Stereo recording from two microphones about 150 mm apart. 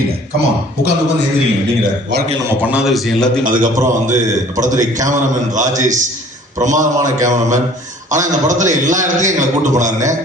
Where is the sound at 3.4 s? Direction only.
65° right (ahead or behind).